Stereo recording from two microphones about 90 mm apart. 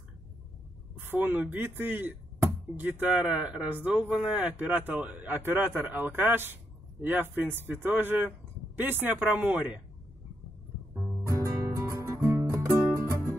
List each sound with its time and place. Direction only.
1.0 s speech: 20° right (ahead or behind)
11.2 s music: 35° right (ahead or behind)
12.4 s music: 35° right (ahead or behind)